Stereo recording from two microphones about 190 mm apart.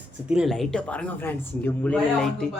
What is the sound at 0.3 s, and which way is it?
Speech, centre (ahead or behind).